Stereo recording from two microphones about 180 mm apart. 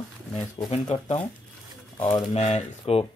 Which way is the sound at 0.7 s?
35° left (ahead or behind).